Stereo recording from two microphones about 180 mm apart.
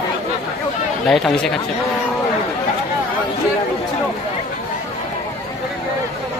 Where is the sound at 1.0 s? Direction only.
5° left (ahead or behind).